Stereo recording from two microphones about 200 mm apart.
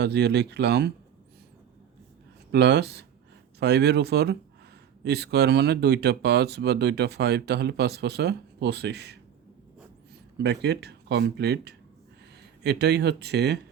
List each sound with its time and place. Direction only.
0.0 s speech: 55° right (ahead or behind)
2.5 s speech: 60° right (ahead or behind)
10.3 s speech: 55° right (ahead or behind)